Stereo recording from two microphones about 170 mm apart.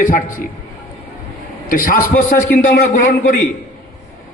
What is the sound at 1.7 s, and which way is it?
A man's voice, 55° left (ahead or behind).